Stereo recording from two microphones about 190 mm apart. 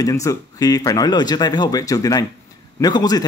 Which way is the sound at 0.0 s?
15° left (ahead or behind).